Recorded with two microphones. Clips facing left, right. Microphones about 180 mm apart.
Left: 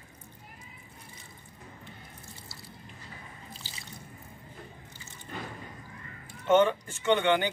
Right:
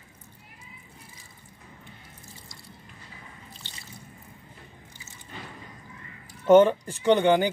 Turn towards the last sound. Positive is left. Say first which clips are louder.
# right 5 dB
turn(degrees=-35)  # may be behind; listen again after turning